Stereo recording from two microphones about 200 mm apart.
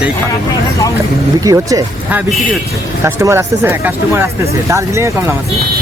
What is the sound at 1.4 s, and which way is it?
Speech, 15° right (ahead or behind).